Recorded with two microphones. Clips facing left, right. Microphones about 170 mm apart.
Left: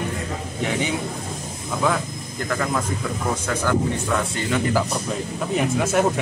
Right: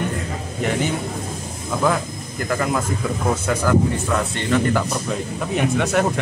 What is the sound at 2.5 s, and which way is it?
Speech, 5° right (ahead or behind).